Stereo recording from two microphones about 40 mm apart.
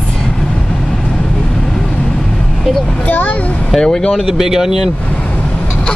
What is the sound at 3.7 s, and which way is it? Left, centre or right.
Speech, centre.